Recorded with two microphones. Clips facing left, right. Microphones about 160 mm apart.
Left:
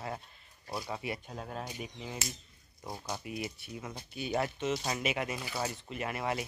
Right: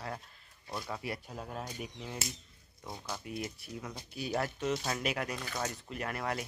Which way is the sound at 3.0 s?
15° left (ahead or behind).